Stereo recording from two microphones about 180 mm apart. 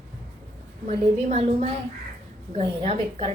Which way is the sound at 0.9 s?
35° right (ahead or behind).